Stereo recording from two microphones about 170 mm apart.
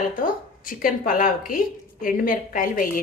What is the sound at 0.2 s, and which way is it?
A woman's voice, 55° left (ahead or behind).